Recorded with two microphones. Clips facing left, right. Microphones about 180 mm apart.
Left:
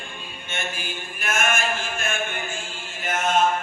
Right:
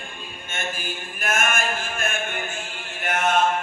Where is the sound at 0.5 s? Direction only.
50° right (ahead or behind).